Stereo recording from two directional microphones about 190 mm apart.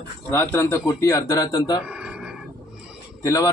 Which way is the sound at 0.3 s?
10° left (ahead or behind).